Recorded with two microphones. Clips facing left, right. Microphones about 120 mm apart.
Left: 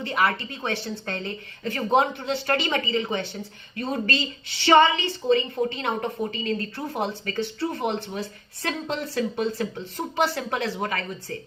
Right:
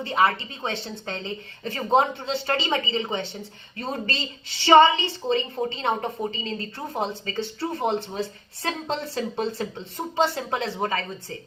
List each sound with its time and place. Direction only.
0.0 s a woman's voice: 25° right (ahead or behind)